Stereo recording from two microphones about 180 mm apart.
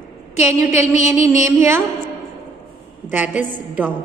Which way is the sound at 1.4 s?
15° right (ahead or behind).